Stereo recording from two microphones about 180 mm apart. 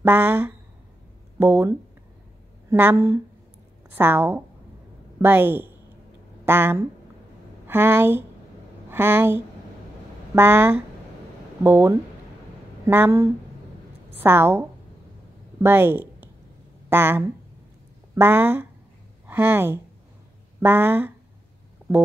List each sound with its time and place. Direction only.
0.0 s a woman's voice: 10° right (ahead or behind)
21.8 s stomach rumble: 10° left (ahead or behind)